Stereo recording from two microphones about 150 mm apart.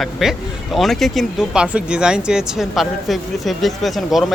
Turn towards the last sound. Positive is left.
turn(degrees=0)  # may be behind; listen again after turning